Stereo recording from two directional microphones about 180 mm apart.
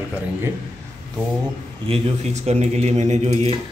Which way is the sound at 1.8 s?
30° right (ahead or behind).